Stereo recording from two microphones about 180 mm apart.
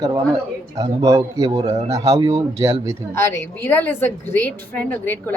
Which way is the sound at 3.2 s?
15° left (ahead or behind).